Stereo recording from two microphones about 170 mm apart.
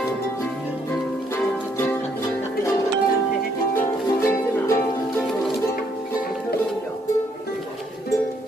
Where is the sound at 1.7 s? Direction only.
15° left (ahead or behind).